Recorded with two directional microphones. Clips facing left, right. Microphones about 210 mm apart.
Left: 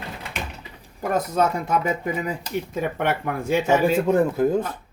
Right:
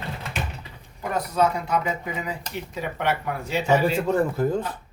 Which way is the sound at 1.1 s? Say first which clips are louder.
Left 1 dB; 45° left (ahead or behind).